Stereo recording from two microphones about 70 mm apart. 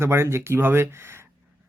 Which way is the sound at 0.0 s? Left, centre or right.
Right.